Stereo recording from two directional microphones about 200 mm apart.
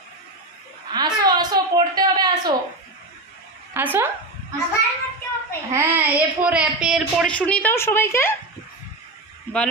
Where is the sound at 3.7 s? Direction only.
10° right (ahead or behind).